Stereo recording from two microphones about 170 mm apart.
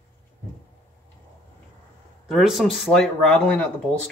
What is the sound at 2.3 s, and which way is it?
Speech, centre (ahead or behind).